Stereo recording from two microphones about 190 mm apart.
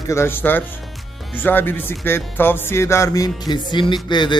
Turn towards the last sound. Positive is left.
turn(degrees=25)  # may be behind; listen again after turning